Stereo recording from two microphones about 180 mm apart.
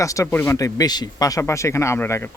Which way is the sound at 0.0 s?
15° left (ahead or behind).